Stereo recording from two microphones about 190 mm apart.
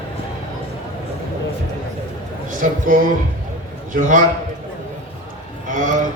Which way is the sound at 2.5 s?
45° right (ahead or behind).